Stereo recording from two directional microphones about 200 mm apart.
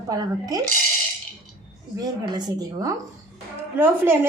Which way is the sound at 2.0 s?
20° right (ahead or behind).